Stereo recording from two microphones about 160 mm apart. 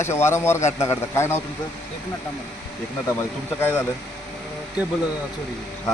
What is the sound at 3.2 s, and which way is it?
Speech, 15° left (ahead or behind).